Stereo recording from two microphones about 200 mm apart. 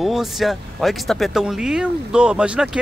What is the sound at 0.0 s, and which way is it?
Speech, centre (ahead or behind).